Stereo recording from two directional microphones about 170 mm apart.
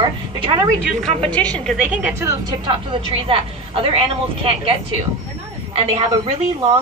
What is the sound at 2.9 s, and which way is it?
A woman's voice, 30° right (ahead or behind).